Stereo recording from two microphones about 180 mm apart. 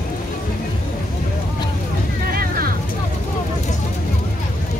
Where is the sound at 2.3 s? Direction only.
55° right (ahead or behind).